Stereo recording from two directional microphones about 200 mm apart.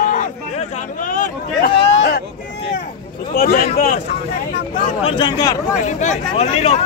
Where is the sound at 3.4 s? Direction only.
50° left (ahead or behind).